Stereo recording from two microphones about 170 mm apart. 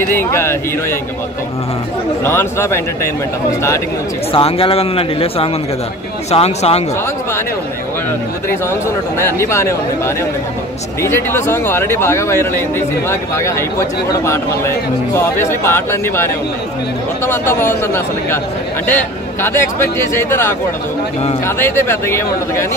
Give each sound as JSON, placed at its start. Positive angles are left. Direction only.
{"t": 0.0, "sound": "speech", "side_deg": 15}
{"t": 2.2, "sound": "speech", "side_deg": 15}
{"t": 4.3, "sound": "speech", "side_deg": 35}
{"t": 9.2, "sound": "speech", "side_deg": 15}
{"t": 17.3, "sound": "speech", "side_deg": 15}